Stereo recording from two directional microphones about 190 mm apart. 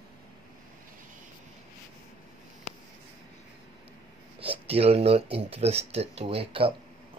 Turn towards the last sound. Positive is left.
turn(degrees=-30)  # may be behind; listen again after turning